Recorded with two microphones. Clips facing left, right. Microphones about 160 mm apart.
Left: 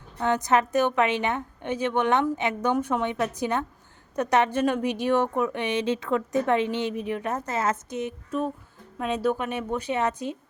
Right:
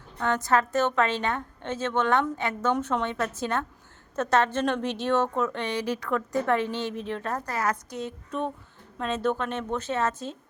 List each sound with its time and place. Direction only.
0.2 s a woman's voice: 15° left (ahead or behind)
8.3 s a woman's voice: 5° left (ahead or behind)